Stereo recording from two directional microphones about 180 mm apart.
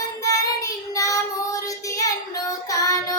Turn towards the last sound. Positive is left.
turn(degrees=20)  # may be behind; listen again after turning